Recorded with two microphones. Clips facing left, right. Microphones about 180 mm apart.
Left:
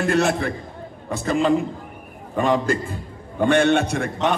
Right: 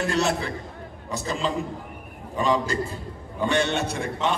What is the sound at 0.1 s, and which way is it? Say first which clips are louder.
A man's voice: left 4 dB; 55° left (ahead or behind).